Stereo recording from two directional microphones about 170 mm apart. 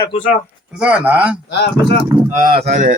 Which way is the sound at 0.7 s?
5° right (ahead or behind).